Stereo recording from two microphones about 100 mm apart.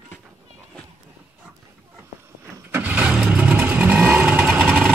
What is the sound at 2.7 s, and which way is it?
Vehicle, 15° right (ahead or behind).